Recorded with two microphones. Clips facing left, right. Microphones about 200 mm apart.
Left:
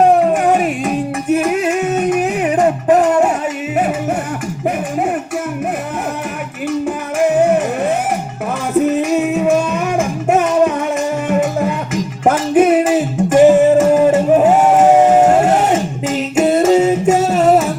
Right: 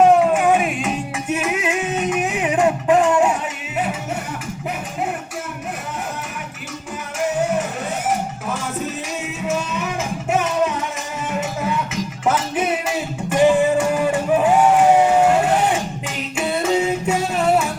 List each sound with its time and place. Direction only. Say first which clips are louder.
0.4 s music: left 3 dB; 40° left (ahead or behind)
9.0 s music: left 13 dB; 60° left (ahead or behind)
16.3 s a sound: left 8 dB; 45° left (ahead or behind)